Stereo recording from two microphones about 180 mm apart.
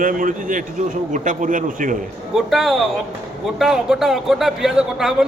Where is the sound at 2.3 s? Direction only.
Centre (ahead or behind).